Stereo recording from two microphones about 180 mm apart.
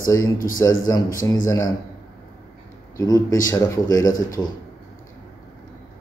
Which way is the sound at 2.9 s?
20° left (ahead or behind).